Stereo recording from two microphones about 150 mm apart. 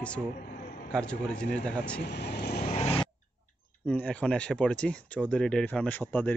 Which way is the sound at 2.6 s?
45° left (ahead or behind).